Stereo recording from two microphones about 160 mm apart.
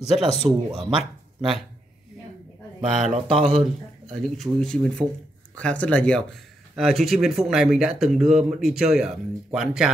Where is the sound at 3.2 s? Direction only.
5° right (ahead or behind).